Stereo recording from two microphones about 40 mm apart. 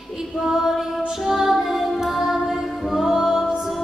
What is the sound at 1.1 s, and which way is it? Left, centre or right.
Music, centre.